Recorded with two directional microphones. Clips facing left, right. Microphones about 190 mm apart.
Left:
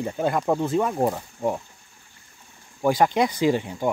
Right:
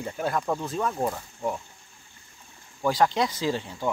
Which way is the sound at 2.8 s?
15° left (ahead or behind).